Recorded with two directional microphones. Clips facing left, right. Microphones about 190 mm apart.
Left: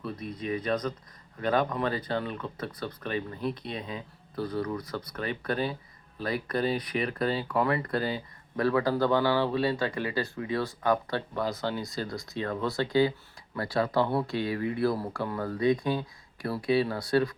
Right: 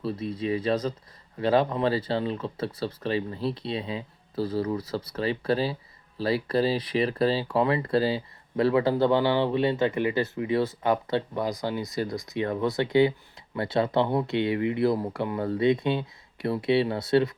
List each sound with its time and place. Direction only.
0.0 s speech: 30° right (ahead or behind); by 11.9 s 5° right (ahead or behind)
12.0 s speech: 20° right (ahead or behind)